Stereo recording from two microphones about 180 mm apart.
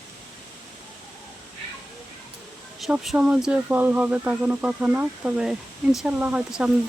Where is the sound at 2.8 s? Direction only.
5° right (ahead or behind).